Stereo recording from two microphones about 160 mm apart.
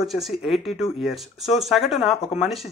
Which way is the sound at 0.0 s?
Centre (ahead or behind).